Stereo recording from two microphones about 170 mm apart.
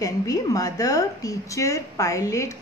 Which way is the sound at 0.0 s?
20° left (ahead or behind).